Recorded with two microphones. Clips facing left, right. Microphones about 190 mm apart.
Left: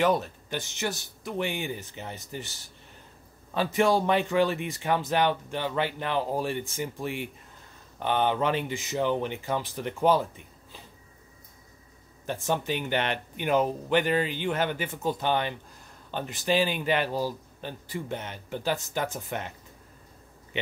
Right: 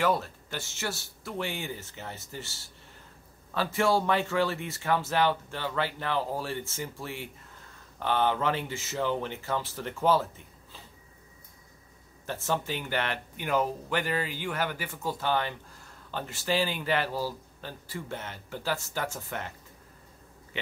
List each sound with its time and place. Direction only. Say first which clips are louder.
0.0 s speech: left 3 dB; 20° left (ahead or behind)
12.3 s speech: left 3 dB; 15° left (ahead or behind)
20.5 s speech: left 5 dB; 20° left (ahead or behind)